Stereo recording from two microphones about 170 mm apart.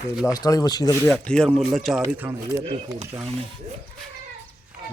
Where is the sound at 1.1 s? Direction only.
5° left (ahead or behind).